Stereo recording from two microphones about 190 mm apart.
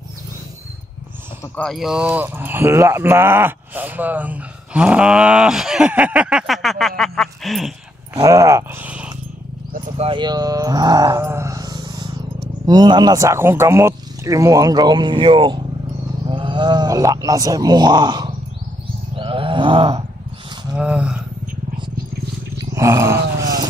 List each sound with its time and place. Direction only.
1.6 s speech: centre (ahead or behind)
7.0 s a sound: centre (ahead or behind)
8.2 s speech: 15° right (ahead or behind)
9.9 s speech: 25° right (ahead or behind)
19.1 s groan: 25° right (ahead or behind)
20.7 s speech: 5° right (ahead or behind)
22.6 s a sound: 15° right (ahead or behind)